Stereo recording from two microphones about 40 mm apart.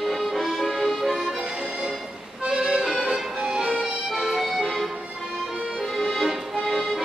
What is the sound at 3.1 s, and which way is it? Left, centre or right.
Music, centre.